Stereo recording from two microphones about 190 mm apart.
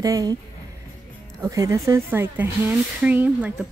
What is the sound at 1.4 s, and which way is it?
Speech, 15° right (ahead or behind).